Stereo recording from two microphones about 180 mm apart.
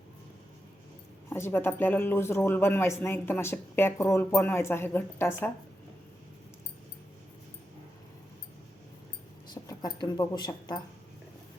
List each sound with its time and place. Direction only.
1.3 s speech: 15° left (ahead or behind)
9.6 s speech: 20° left (ahead or behind)